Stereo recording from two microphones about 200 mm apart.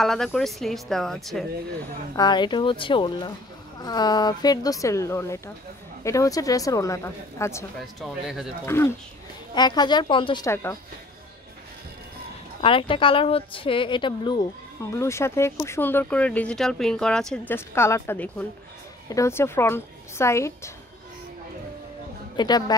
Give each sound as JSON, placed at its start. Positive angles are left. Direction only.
{"t": 0.0, "sound": "speech", "side_deg": 0}
{"t": 2.1, "sound": "a woman's voice", "side_deg": 20}
{"t": 7.8, "sound": "speech", "side_deg": 0}
{"t": 8.6, "sound": "a woman's voice", "side_deg": 15}
{"t": 12.6, "sound": "a woman's voice", "side_deg": 25}
{"t": 22.4, "sound": "a woman's voice", "side_deg": 20}